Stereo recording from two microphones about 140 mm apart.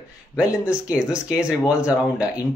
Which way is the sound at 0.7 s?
5° right (ahead or behind).